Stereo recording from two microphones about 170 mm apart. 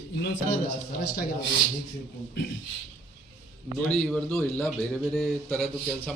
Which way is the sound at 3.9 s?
5° left (ahead or behind).